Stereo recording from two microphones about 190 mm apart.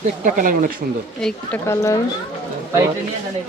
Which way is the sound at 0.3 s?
45° right (ahead or behind).